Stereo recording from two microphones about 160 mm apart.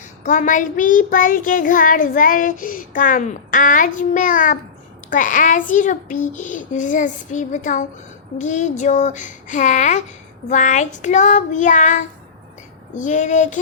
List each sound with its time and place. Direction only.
0.2 s a child's voice: 50° left (ahead or behind)